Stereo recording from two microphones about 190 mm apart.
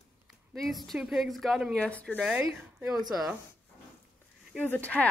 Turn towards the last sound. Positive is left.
turn(degrees=10)  # may be behind; listen again after turning